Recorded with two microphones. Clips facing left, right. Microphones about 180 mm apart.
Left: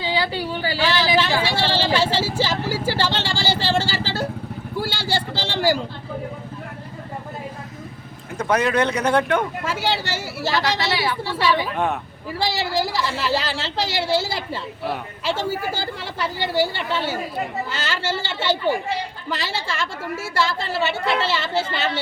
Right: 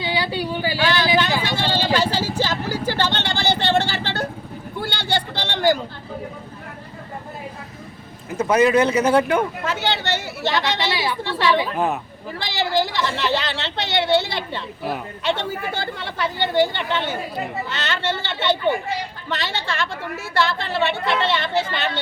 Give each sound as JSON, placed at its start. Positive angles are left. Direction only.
{"t": 0.0, "sound": "speech", "side_deg": -15}
{"t": 0.9, "sound": "speech", "side_deg": 10}
{"t": 2.4, "sound": "a sound", "side_deg": 5}
{"t": 8.4, "sound": "speech", "side_deg": -5}
{"t": 9.6, "sound": "speech", "side_deg": 10}
{"t": 10.9, "sound": "a woman's voice", "side_deg": -15}
{"t": 11.2, "sound": "speech", "side_deg": 5}